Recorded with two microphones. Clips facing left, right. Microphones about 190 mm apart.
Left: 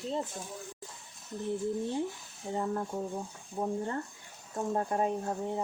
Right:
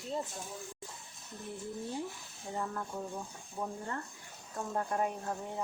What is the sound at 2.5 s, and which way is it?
Speech, 25° left (ahead or behind).